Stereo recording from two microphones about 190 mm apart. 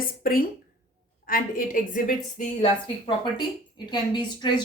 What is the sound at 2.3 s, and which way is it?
Speech, 35° left (ahead or behind).